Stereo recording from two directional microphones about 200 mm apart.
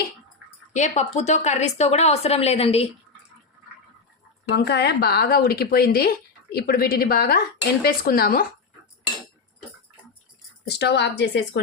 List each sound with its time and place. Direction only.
0.7 s speech: 35° left (ahead or behind)
4.5 s a woman's voice: 55° left (ahead or behind)
10.7 s a woman's voice: 55° left (ahead or behind)